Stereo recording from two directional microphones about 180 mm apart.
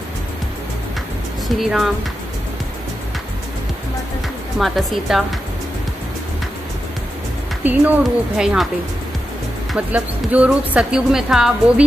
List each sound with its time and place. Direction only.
1.6 s speech: centre (ahead or behind)
4.6 s speech: centre (ahead or behind)
7.6 s speech: 10° right (ahead or behind)
9.7 s speech: 10° right (ahead or behind)